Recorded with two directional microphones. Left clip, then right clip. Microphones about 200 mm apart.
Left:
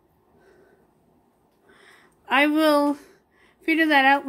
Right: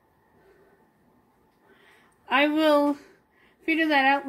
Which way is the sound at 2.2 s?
15° left (ahead or behind).